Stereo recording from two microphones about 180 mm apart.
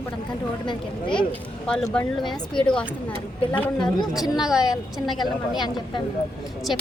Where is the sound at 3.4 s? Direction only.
25° left (ahead or behind).